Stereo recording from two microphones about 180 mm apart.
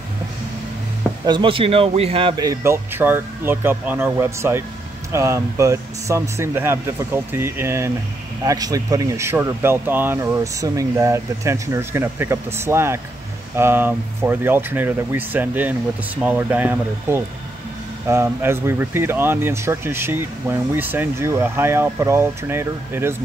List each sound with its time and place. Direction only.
1.2 s speech: 25° right (ahead or behind)